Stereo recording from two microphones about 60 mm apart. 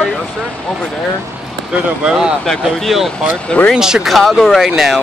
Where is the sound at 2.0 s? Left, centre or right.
Centre.